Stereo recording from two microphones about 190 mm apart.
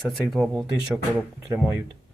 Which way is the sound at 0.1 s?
5° right (ahead or behind).